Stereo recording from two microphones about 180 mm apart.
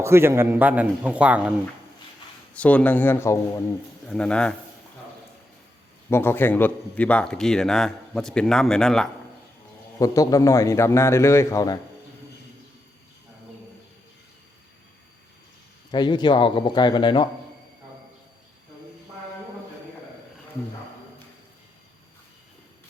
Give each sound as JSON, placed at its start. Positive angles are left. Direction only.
{"t": 0.0, "sound": "a man's voice", "side_deg": -15}
{"t": 2.5, "sound": "a man's voice", "side_deg": 5}
{"t": 6.1, "sound": "a man's voice", "side_deg": 15}
{"t": 10.0, "sound": "a man's voice", "side_deg": 20}
{"t": 15.9, "sound": "speech", "side_deg": 25}